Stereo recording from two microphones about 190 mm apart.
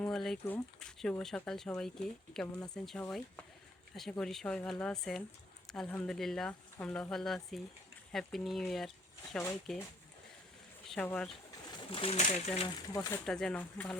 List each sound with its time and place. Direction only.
0.0 s speech: 5° left (ahead or behind)
10.8 s speech: 5° left (ahead or behind)
11.7 s speech: 25° left (ahead or behind)
12.6 s speech: 20° left (ahead or behind)
13.2 s speech: 5° left (ahead or behind)